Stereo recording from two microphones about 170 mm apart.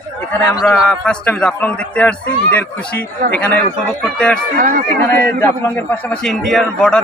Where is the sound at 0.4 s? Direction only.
5° left (ahead or behind).